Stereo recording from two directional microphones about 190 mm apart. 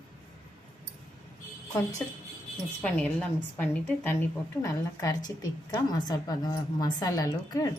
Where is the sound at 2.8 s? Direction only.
10° left (ahead or behind).